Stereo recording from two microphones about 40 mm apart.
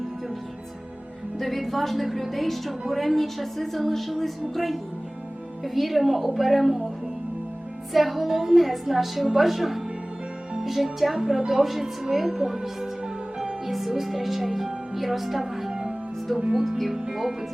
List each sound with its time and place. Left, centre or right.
1.4 s a woman's voice: centre
7.9 s a woman's voice: centre
15.7 s music: centre
16.3 s a woman's voice: centre